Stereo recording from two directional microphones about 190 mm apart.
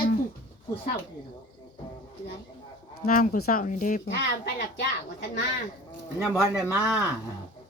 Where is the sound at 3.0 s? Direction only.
50° left (ahead or behind).